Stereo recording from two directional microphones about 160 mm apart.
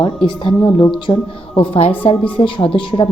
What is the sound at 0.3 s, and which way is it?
A woman's voice, 25° left (ahead or behind).